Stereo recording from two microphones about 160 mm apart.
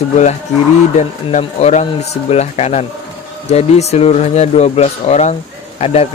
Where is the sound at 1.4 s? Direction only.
40° left (ahead or behind).